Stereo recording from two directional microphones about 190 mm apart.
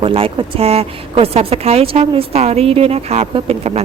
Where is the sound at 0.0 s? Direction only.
30° right (ahead or behind).